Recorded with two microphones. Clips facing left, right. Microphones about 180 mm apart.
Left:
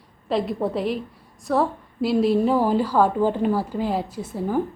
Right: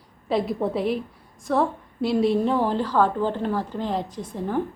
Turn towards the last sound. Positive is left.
turn(degrees=5)  # may be behind; listen again after turning